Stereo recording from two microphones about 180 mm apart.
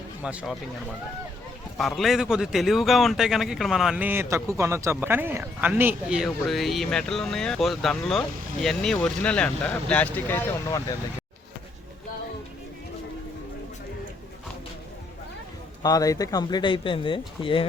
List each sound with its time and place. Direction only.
0.2 s speech: 5° right (ahead or behind)
1.8 s speech: centre (ahead or behind); by 10.9 s 20° left (ahead or behind)
15.8 s speech: 20° left (ahead or behind)